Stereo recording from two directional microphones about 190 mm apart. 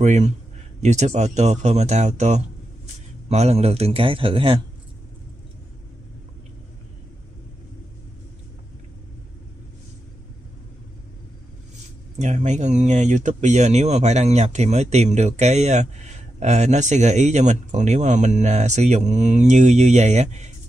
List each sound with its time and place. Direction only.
0.0 s a man's voice: 35° right (ahead or behind)
12.2 s speech: 40° right (ahead or behind)